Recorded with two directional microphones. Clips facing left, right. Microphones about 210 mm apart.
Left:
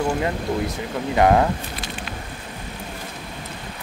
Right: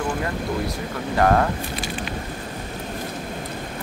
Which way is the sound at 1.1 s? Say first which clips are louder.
Left 2 dB; 15° left (ahead or behind).